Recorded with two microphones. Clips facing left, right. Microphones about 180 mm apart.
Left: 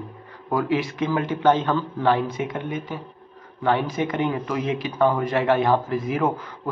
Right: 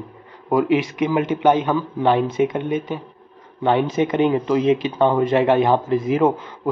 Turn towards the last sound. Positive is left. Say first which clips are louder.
# right 6 dB
turn(degrees=-25)  # may be behind; listen again after turning